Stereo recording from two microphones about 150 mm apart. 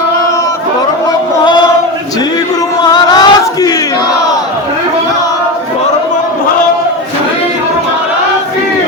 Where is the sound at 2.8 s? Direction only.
30° left (ahead or behind).